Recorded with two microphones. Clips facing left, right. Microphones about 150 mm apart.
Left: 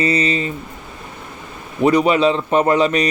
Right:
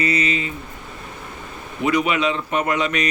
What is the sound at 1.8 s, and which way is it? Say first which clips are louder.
Speech: left 6 dB; 35° left (ahead or behind).